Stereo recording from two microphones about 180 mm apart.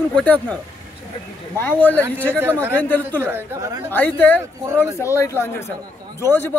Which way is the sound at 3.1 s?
10° right (ahead or behind).